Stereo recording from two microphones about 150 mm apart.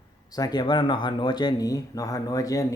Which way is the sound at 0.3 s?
25° left (ahead or behind).